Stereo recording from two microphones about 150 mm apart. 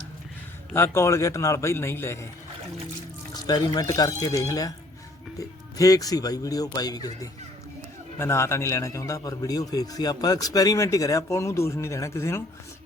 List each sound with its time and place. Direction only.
0.7 s a man's voice: 15° left (ahead or behind)
3.3 s a man's voice: 25° left (ahead or behind)